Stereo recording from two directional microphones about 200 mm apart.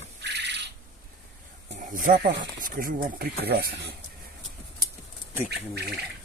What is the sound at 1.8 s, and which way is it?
Speech, 40° right (ahead or behind).